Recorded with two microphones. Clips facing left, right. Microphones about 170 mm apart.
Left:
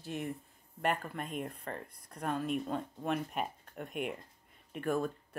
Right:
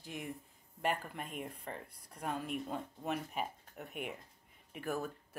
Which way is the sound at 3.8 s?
65° left (ahead or behind).